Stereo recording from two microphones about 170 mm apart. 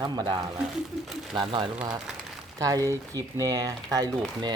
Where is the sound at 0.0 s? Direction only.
25° right (ahead or behind).